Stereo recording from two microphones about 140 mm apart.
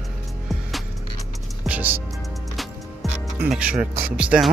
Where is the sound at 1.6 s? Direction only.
10° right (ahead or behind).